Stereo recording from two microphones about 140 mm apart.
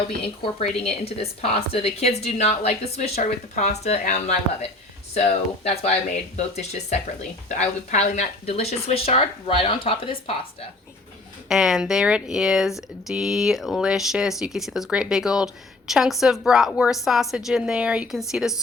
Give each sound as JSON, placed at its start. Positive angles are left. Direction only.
{"t": 0.6, "sound": "a woman's voice", "side_deg": 45}
{"t": 11.4, "sound": "speech", "side_deg": -5}